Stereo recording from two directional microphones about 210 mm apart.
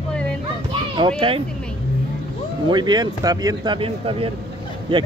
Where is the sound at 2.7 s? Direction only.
20° right (ahead or behind).